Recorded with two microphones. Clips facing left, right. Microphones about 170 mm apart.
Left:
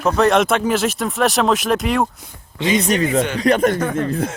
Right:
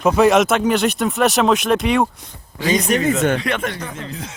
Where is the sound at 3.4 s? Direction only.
40° left (ahead or behind).